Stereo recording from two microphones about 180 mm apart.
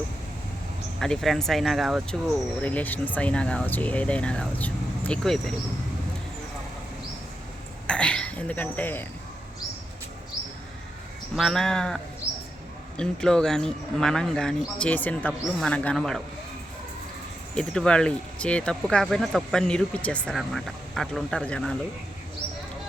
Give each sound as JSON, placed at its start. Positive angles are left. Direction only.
{"t": 0.9, "sound": "speech", "side_deg": 0}
{"t": 7.9, "sound": "speech", "side_deg": 5}
{"t": 11.3, "sound": "speech", "side_deg": 5}
{"t": 13.0, "sound": "speech", "side_deg": 5}
{"t": 17.5, "sound": "speech", "side_deg": 5}